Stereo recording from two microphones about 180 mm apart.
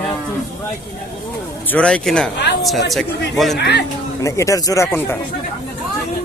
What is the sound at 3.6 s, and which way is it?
Speech, 65° left (ahead or behind).